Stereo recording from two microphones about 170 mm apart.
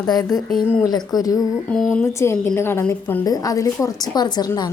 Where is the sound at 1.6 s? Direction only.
5° left (ahead or behind).